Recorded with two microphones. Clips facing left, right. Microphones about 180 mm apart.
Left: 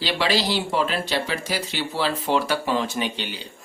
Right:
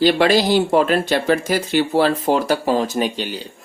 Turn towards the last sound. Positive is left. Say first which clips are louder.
# right 6 dB
turn(degrees=-40)  # may be behind; listen again after turning